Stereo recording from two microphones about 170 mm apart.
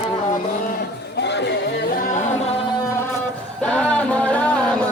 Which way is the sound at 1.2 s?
90° left.